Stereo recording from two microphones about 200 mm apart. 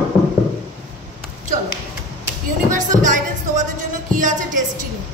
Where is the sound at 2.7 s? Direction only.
40° right (ahead or behind).